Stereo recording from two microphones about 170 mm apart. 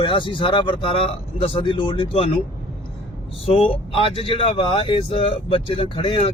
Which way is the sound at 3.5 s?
35° left (ahead or behind).